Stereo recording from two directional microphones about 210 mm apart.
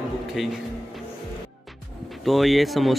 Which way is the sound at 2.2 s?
Centre (ahead or behind).